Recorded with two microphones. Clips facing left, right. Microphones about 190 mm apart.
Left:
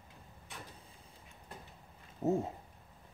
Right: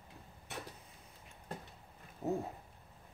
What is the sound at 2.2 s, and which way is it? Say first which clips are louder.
Cat: left 5 dB; 25° left (ahead or behind).